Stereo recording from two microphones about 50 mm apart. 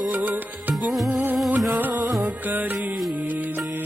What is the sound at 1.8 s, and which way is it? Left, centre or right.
Music, right.